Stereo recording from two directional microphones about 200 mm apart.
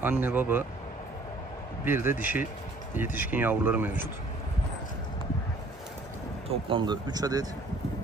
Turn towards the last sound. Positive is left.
turn(degrees=-20)  # may be behind; listen again after turning